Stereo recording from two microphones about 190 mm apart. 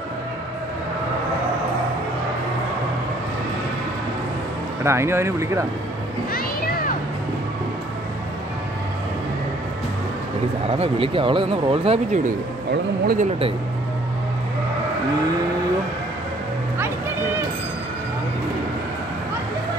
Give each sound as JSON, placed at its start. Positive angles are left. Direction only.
{"t": 4.8, "sound": "speech", "side_deg": -15}
{"t": 10.7, "sound": "speech", "side_deg": -30}
{"t": 12.7, "sound": "speech", "side_deg": -55}